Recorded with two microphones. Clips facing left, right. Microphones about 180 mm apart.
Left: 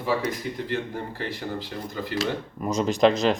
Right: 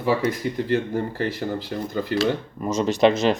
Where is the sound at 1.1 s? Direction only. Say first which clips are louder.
Right 5 dB; 50° right (ahead or behind).